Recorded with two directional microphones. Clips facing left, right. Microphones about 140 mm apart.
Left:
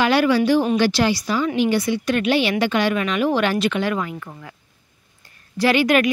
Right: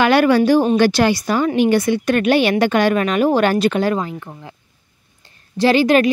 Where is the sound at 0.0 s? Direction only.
55° right (ahead or behind).